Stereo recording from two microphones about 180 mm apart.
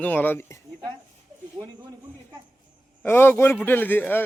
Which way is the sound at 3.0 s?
10° left (ahead or behind).